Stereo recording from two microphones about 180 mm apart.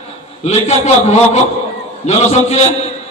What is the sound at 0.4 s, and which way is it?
A man's voice, 40° left (ahead or behind).